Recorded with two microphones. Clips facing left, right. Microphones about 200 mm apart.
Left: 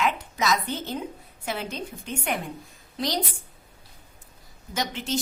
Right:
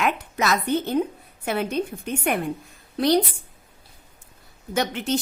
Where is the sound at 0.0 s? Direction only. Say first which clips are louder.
Right 2 dB; 60° right (ahead or behind).